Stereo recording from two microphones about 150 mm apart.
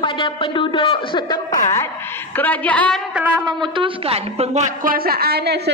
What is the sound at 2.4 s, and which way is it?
Speech, 10° left (ahead or behind).